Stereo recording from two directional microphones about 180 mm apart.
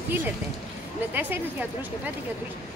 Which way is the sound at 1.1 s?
10° right (ahead or behind).